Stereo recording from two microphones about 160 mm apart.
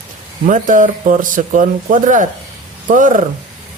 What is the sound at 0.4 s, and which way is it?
Speech, 55° right (ahead or behind).